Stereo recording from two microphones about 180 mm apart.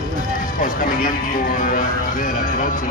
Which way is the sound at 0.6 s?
50° left (ahead or behind).